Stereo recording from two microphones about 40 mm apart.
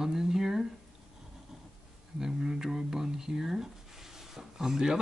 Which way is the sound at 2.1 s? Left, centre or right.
Centre.